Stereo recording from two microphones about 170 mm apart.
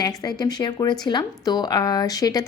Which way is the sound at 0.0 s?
25° left (ahead or behind).